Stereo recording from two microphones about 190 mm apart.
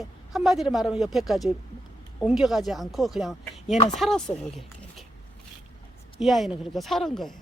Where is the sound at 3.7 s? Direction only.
35° left (ahead or behind).